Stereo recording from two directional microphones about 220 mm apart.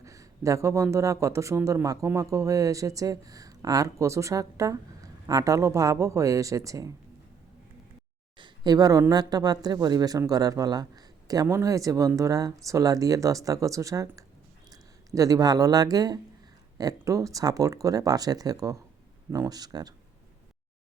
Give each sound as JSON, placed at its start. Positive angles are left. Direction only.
{"t": 0.0, "sound": "speech", "side_deg": -15}
{"t": 8.4, "sound": "speech", "side_deg": -20}